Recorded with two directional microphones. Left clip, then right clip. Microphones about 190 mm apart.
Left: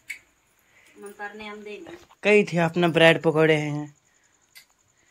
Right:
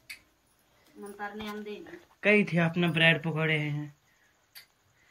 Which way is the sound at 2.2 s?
15° left (ahead or behind).